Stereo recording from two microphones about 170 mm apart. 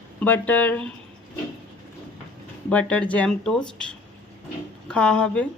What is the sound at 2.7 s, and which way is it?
Speech, 5° left (ahead or behind).